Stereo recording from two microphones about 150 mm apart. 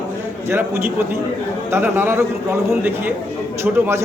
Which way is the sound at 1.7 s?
15° right (ahead or behind).